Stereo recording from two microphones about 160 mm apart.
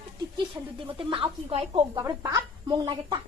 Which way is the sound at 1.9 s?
25° right (ahead or behind).